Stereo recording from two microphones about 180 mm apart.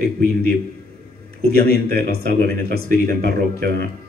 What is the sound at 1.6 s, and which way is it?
Speech, 60° right (ahead or behind).